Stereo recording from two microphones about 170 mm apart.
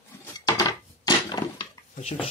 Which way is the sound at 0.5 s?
20° left (ahead or behind).